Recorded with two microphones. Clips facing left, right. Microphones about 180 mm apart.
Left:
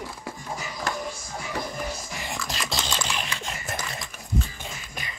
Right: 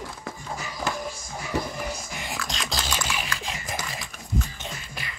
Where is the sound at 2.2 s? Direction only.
Centre (ahead or behind).